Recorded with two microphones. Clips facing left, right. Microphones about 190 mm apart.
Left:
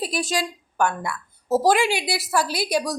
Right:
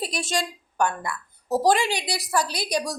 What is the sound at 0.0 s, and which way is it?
A woman's voice, centre (ahead or behind).